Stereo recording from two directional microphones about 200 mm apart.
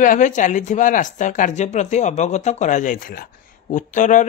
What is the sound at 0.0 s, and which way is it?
Speech, 40° left (ahead or behind).